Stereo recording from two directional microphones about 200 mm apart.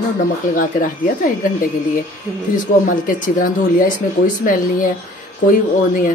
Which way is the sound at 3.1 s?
40° left (ahead or behind).